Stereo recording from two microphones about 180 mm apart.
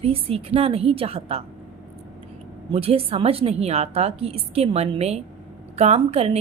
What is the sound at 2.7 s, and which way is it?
A woman's voice, 30° right (ahead or behind).